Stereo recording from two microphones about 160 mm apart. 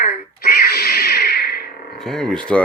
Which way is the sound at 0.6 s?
75° left (ahead or behind).